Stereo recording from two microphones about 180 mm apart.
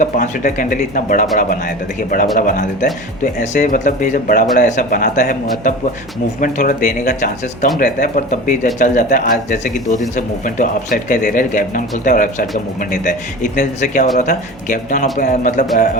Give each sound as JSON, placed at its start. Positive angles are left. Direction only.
{"t": 0.0, "sound": "speech", "side_deg": 50}